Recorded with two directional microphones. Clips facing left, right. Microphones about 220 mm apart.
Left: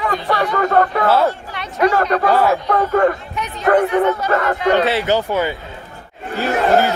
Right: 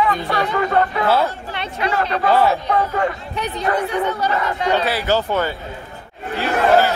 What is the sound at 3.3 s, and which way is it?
Speech, 35° right (ahead or behind).